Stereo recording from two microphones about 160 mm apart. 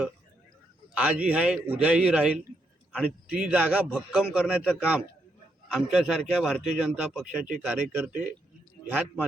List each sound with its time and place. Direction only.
0.9 s a man's voice: 5° right (ahead or behind)